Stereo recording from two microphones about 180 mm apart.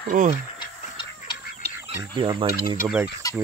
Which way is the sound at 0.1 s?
45° right (ahead or behind).